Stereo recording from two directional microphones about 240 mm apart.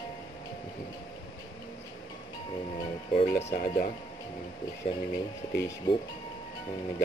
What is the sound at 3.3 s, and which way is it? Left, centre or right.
Speech, left.